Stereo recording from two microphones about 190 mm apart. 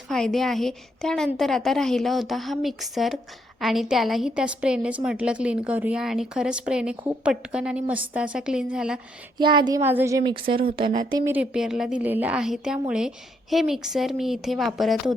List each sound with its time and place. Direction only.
0.1 s a woman's voice: centre (ahead or behind)
9.4 s speech: 25° right (ahead or behind)
9.8 s speech: 10° right (ahead or behind)
11.3 s a woman's voice: 5° right (ahead or behind)